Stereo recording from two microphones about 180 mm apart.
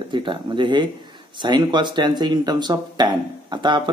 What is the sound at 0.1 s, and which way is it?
Speech, 25° right (ahead or behind).